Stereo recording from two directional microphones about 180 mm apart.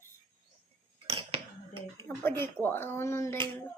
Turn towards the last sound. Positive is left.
turn(degrees=15)  # may be behind; listen again after turning